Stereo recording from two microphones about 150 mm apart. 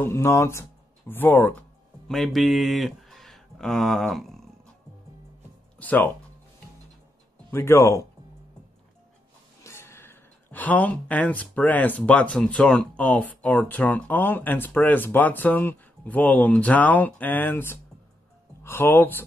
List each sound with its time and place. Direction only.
0.0 s speech: 15° left (ahead or behind)
2.0 s speech: centre (ahead or behind)
5.8 s speech: 10° left (ahead or behind)
7.5 s speech: 15° left (ahead or behind)
9.6 s speech: 20° left (ahead or behind)